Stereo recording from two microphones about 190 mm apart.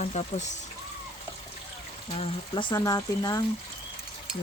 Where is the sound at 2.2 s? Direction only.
25° left (ahead or behind).